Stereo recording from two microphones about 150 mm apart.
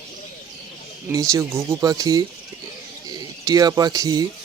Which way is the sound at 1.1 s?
20° right (ahead or behind).